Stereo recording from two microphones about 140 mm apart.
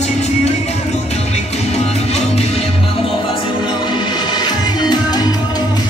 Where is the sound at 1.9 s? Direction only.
50° left (ahead or behind).